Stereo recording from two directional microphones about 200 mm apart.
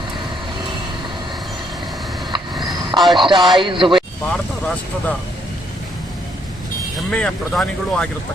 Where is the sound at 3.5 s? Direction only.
25° right (ahead or behind).